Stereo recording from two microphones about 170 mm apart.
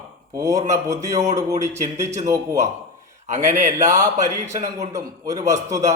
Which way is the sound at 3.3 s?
45° right (ahead or behind).